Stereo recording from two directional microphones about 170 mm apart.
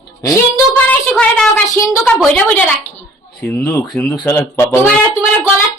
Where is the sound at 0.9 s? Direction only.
5° left (ahead or behind).